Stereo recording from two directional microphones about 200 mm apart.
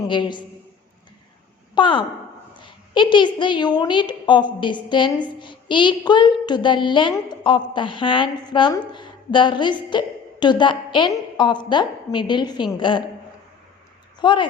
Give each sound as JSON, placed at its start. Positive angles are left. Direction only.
{"t": 0.1, "sound": "a woman's voice", "side_deg": 25}
{"t": 1.7, "sound": "a woman's voice", "side_deg": 25}
{"t": 14.2, "sound": "speech", "side_deg": 25}